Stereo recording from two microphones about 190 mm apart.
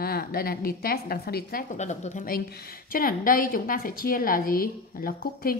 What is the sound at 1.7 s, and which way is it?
A woman's voice, 35° left (ahead or behind).